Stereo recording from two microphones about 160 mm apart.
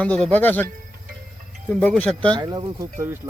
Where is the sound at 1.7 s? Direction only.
10° left (ahead or behind).